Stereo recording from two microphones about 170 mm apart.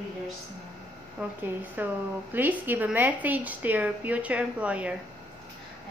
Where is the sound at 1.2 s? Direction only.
5° right (ahead or behind).